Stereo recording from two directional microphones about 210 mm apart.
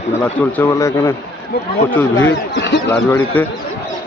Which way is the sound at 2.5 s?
55° left (ahead or behind).